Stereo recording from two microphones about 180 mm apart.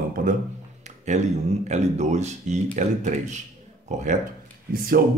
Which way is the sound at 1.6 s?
40° right (ahead or behind).